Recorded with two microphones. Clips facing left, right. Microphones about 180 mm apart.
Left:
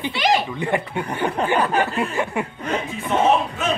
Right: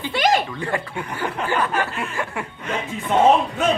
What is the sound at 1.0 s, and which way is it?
Speech, 30° left (ahead or behind).